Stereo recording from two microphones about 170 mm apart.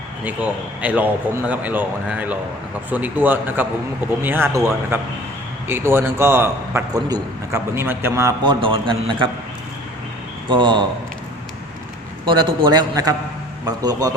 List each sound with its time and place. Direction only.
0.8 s a man's voice: 10° right (ahead or behind)
8.4 s a man's voice: 30° right (ahead or behind)
10.5 s a man's voice: 30° right (ahead or behind)
12.2 s a man's voice: 25° right (ahead or behind)